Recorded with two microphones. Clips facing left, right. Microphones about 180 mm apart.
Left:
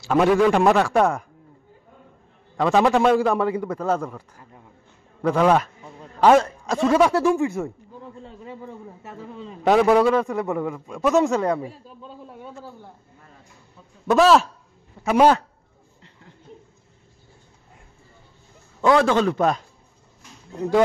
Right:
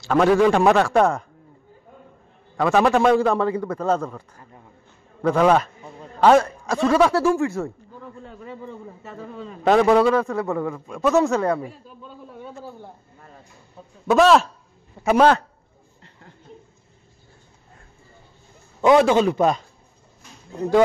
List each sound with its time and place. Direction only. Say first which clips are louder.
0.0 s speech: right 1 dB; 5° left (ahead or behind)
2.5 s a man's voice: even; 15° left (ahead or behind)
3.0 s a man's voice: right 1 dB; 5° left (ahead or behind)
5.3 s a man's voice: right 1 dB; centre (ahead or behind)
6.4 s a man's voice: even; 20° left (ahead or behind)
8.0 s a sound: right 1 dB; 25° left (ahead or behind)
8.5 s a man's voice: right 1 dB; 15° left (ahead or behind)
9.8 s a man's voice: right 1 dB; 10° left (ahead or behind)
11.6 s a man's voice: left 1 dB; 30° left (ahead or behind)
14.0 s a man's voice: right 1 dB; centre (ahead or behind)
16.0 s a sound: right 2 dB; 45° right (ahead or behind)
18.9 s a man's voice: right 2 dB; 20° right (ahead or behind)